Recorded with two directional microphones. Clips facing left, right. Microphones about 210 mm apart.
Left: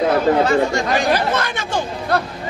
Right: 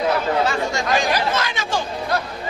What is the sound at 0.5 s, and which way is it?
Speech, 55° left (ahead or behind).